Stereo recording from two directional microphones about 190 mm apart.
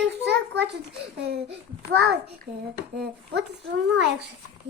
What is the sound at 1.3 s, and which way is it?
A child's voice, 65° right (ahead or behind).